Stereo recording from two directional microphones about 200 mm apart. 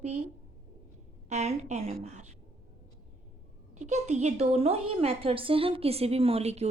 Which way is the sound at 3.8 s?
35° right (ahead or behind).